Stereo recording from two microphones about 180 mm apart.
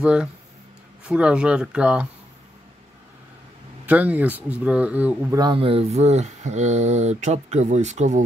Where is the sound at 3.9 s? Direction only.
10° right (ahead or behind).